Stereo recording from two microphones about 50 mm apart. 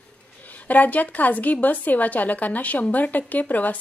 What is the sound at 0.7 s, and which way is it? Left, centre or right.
A woman's voice, left.